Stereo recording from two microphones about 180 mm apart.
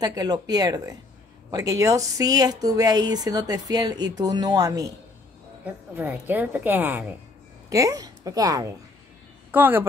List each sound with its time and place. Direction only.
0.0 s a woman's voice: 20° right (ahead or behind)
5.9 s a woman's voice: 10° right (ahead or behind)